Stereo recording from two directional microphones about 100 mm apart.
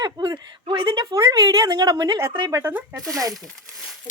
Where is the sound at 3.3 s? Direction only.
Centre (ahead or behind).